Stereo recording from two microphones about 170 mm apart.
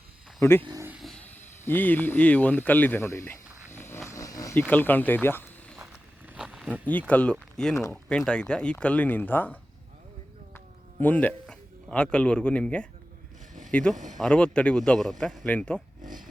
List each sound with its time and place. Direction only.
0.6 s speech: 20° right (ahead or behind)
0.9 s a sound: centre (ahead or behind)
1.3 s speech: 10° left (ahead or behind)
5.8 s walk: 10° right (ahead or behind)
7.1 s speech: 10° left (ahead or behind)
11.0 s speech: 10° left (ahead or behind)
16.0 s a sound: 50° right (ahead or behind)